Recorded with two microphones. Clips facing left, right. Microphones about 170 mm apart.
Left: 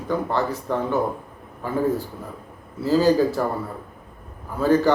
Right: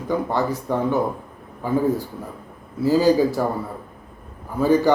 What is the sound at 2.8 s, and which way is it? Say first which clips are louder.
Speech: right 1 dB; 10° right (ahead or behind).